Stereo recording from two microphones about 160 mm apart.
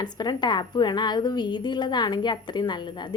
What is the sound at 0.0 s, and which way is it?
Speech, 25° left (ahead or behind).